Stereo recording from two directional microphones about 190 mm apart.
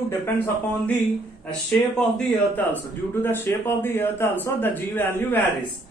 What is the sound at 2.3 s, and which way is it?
A man's voice, 10° left (ahead or behind).